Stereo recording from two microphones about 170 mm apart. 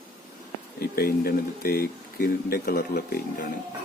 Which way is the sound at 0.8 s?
65° left (ahead or behind).